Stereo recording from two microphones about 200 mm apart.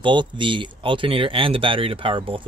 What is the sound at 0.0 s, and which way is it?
Speech, 25° right (ahead or behind).